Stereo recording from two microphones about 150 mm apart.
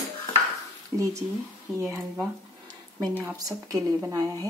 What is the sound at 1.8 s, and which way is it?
A woman's voice, 20° right (ahead or behind).